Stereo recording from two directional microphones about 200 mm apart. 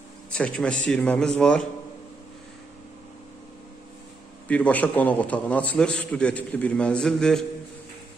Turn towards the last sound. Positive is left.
turn(degrees=5)  # may be behind; listen again after turning